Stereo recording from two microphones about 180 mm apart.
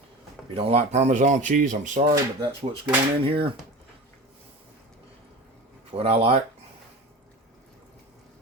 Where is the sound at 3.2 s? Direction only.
30° right (ahead or behind).